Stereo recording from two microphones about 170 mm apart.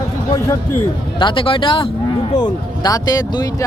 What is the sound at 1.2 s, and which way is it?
Speech, 30° left (ahead or behind).